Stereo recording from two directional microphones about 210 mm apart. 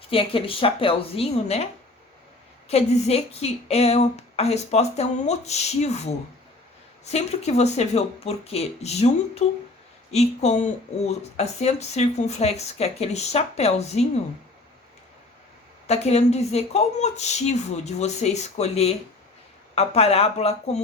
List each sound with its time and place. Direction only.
0.1 s a woman's voice: 25° left (ahead or behind)
2.6 s speech: 30° left (ahead or behind)
15.9 s a woman's voice: 30° left (ahead or behind)